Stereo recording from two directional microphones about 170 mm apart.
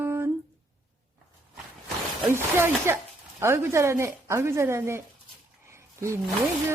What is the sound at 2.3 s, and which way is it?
A woman's voice, 15° right (ahead or behind).